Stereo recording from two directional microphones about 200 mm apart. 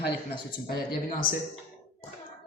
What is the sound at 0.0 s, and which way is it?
Speech, 55° left (ahead or behind).